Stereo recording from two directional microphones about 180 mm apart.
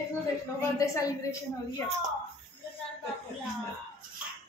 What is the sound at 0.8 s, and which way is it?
Female singing, 15° left (ahead or behind).